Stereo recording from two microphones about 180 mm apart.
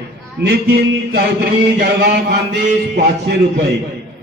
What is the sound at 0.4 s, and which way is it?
A man's voice, 65° right (ahead or behind).